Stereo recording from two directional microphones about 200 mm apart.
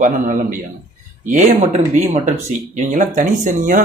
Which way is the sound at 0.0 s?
40° right (ahead or behind).